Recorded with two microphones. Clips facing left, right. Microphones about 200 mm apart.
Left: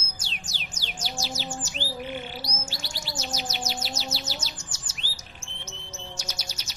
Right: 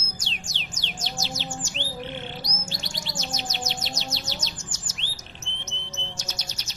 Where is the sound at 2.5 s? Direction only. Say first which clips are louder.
Right 1 dB; 10° left (ahead or behind).